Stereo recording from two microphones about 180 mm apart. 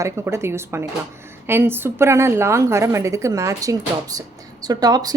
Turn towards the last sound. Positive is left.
turn(degrees=-20)  # may be behind; listen again after turning